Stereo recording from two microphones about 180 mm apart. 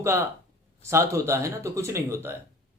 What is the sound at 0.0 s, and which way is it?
Speech, 15° right (ahead or behind).